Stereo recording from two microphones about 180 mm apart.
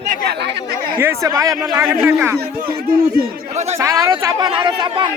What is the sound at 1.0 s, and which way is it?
Speech, 15° right (ahead or behind).